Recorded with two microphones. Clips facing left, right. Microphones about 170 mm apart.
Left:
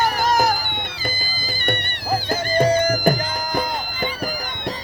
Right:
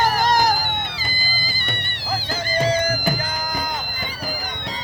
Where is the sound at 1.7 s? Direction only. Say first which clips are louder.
Left 6 dB; 50° left (ahead or behind).